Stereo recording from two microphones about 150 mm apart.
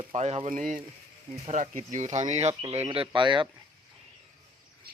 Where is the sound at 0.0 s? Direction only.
50° right (ahead or behind).